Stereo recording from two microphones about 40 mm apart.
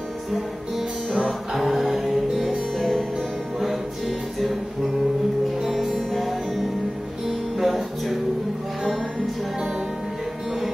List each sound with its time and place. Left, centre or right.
1.1 s music: centre
1.6 s music: centre
2.8 s music: centre
5.7 s music: centre